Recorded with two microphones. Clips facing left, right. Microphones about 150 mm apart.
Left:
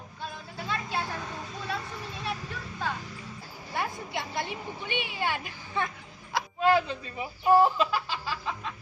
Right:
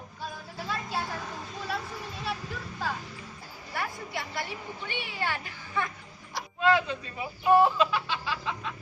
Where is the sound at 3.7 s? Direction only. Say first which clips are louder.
Left 2 dB; 20° left (ahead or behind).